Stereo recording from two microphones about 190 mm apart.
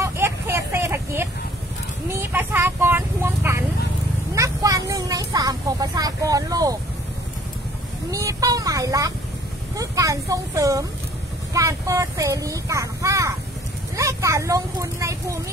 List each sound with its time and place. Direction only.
0.0 s a sound: 15° right (ahead or behind)
2.1 s vehicle: 10° right (ahead or behind)
8.1 s vehicle: 15° right (ahead or behind)
9.8 s speech: 15° right (ahead or behind)